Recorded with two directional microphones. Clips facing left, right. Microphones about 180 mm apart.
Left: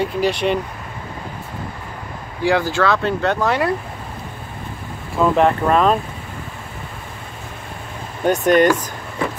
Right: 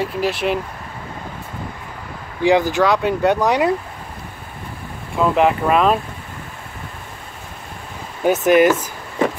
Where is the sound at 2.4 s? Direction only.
20° right (ahead or behind).